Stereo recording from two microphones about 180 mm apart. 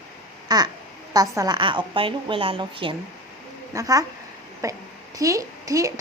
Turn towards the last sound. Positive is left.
turn(degrees=-20)  # may be behind; listen again after turning